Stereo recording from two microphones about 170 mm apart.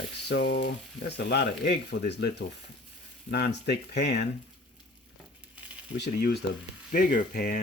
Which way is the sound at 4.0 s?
80° left.